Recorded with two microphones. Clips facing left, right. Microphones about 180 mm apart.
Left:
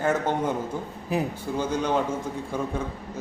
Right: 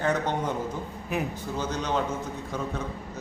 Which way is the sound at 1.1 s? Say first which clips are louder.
Left 3 dB; 35° left (ahead or behind).